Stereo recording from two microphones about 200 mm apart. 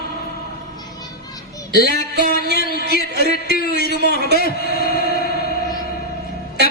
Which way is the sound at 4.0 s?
55° right (ahead or behind).